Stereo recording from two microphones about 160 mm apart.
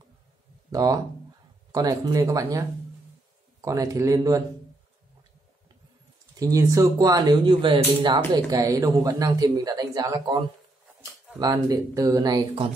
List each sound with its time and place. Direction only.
0.7 s speech: 20° right (ahead or behind)
3.6 s speech: 20° right (ahead or behind)
6.3 s speech: 20° right (ahead or behind)